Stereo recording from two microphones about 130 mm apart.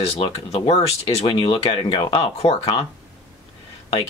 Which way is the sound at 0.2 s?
40° left (ahead or behind).